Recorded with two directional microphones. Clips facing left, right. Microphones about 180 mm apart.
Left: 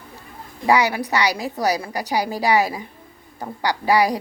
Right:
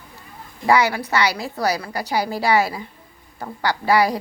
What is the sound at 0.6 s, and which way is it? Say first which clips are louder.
A woman's voice: even; 15° left (ahead or behind).